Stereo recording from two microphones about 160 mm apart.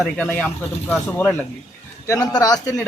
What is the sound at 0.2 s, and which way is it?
Speech, 10° left (ahead or behind).